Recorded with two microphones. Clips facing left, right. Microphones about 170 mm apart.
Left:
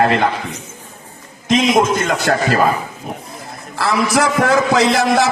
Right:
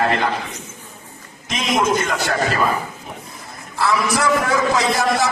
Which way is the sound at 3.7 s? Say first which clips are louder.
Left 3 dB; 80° left.